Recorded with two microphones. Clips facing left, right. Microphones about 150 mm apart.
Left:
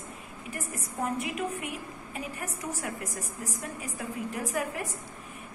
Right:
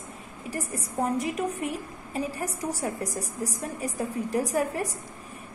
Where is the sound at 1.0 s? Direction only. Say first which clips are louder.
Right 4 dB; 40° right (ahead or behind).